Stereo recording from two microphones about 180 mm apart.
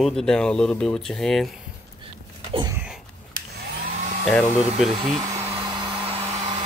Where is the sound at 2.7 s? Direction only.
5° right (ahead or behind).